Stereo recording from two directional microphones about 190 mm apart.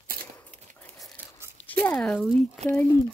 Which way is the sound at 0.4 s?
10° left (ahead or behind).